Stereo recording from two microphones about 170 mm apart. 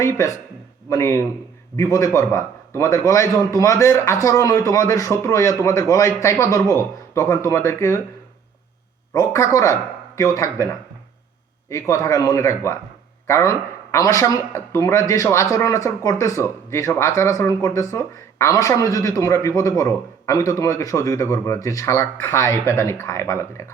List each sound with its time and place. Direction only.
0.0 s speech: 15° left (ahead or behind)
9.1 s speech: 20° left (ahead or behind)
11.7 s speech: 15° left (ahead or behind)